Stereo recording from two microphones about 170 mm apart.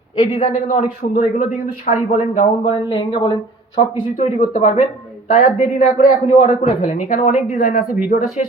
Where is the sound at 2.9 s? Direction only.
30° left (ahead or behind).